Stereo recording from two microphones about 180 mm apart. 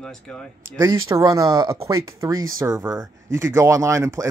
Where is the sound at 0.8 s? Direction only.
20° right (ahead or behind).